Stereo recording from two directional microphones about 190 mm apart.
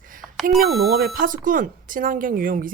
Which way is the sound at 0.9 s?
50° right (ahead or behind).